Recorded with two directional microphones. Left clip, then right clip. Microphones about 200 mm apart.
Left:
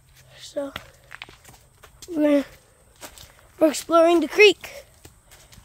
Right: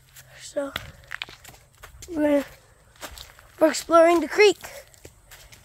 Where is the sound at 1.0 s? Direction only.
50° right (ahead or behind).